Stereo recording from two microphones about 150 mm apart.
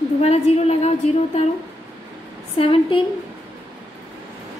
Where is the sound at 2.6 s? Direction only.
35° left (ahead or behind).